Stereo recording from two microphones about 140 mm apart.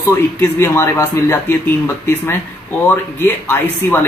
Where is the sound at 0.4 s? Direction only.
20° left (ahead or behind).